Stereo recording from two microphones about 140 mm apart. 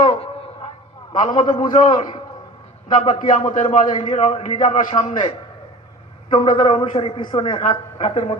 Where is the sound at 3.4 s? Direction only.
40° left (ahead or behind).